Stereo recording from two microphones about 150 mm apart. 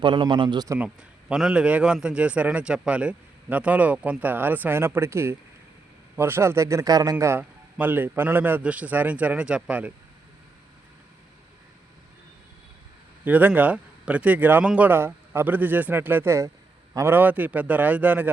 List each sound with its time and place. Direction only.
0.0 s a man's voice: 35° right (ahead or behind)
1.3 s a man's voice: 5° right (ahead or behind)
13.2 s a man's voice: 10° right (ahead or behind)